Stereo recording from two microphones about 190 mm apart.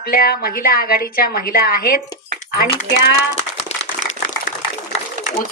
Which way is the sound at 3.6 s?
35° left (ahead or behind).